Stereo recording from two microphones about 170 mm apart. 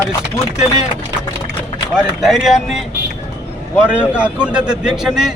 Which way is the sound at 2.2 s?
Centre (ahead or behind).